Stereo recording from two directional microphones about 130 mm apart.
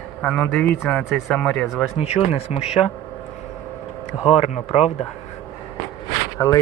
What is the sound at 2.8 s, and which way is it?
Speech, 25° left (ahead or behind).